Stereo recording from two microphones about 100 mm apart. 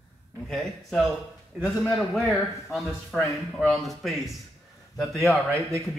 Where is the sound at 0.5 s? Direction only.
5° left (ahead or behind).